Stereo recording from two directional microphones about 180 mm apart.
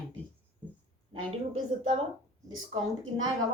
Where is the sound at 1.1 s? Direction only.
30° right (ahead or behind).